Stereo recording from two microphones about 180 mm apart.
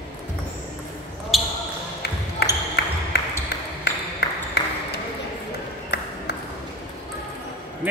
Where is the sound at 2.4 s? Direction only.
65° left (ahead or behind).